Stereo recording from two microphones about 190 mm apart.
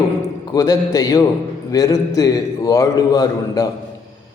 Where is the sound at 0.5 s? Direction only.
20° left (ahead or behind).